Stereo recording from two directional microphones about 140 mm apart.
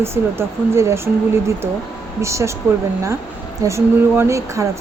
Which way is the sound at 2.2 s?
20° right (ahead or behind).